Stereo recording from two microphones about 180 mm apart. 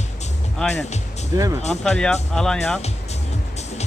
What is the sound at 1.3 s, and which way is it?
Speech, 20° right (ahead or behind).